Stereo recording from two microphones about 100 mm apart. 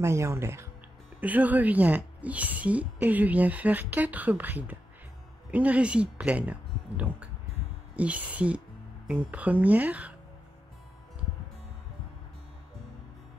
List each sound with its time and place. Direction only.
0.0 s a woman's voice: 25° right (ahead or behind)